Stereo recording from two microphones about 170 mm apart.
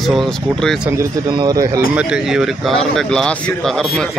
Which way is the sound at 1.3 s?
20° right (ahead or behind).